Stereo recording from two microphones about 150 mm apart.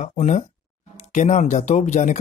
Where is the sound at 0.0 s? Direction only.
50° left (ahead or behind).